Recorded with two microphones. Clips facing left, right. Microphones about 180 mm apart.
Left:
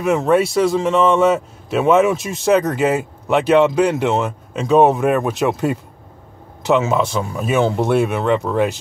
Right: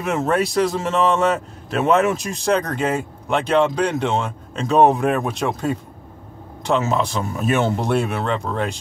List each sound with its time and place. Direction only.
0.0 s a man's voice: centre (ahead or behind)